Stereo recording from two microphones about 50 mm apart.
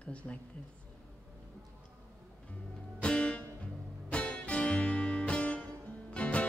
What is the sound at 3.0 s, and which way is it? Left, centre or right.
Music, left.